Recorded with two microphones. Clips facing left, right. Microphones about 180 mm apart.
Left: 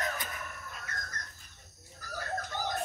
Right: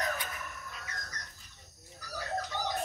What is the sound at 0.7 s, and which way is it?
Dog, 50° left (ahead or behind).